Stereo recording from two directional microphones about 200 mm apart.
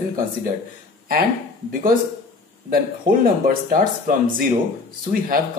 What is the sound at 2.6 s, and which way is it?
Speech, 45° right (ahead or behind).